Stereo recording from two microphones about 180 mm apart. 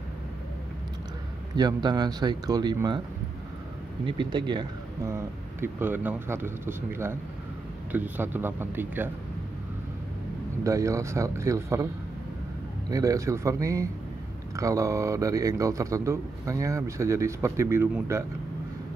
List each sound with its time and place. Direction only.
1.6 s speech: 25° right (ahead or behind)
4.0 s a man's voice: 25° right (ahead or behind)
10.6 s a man's voice: 15° right (ahead or behind)
12.9 s a man's voice: 20° right (ahead or behind)